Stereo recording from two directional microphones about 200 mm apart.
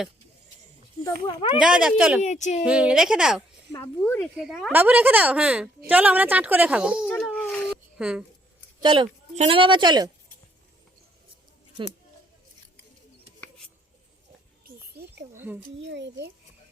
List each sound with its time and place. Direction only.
1.0 s a child's voice: 25° left (ahead or behind)
1.5 s speech: 5° right (ahead or behind)
2.2 s speech: 35° left (ahead or behind)
2.6 s a woman's voice: 5° right (ahead or behind)
7.2 s babbling: 5° left (ahead or behind)
7.9 s speech: 5° right (ahead or behind)
8.8 s a woman's voice: 25° right (ahead or behind)
14.6 s a sound: 50° right (ahead or behind)
15.8 s a child's voice: 60° right (ahead or behind)